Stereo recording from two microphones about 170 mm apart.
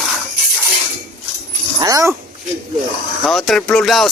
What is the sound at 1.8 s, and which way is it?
Speech, 20° right (ahead or behind).